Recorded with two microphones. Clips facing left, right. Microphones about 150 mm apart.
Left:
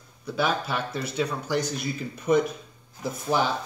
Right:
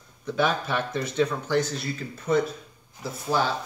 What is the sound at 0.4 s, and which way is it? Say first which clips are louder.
Speech: right 1 dB; 5° left (ahead or behind).